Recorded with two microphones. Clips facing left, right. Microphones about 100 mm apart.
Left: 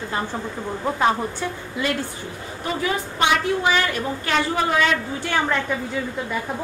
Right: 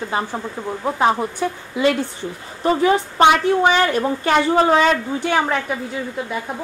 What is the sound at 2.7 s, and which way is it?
A woman's voice, 35° right (ahead or behind).